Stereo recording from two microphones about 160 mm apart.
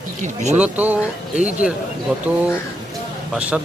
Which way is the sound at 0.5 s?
10° right (ahead or behind).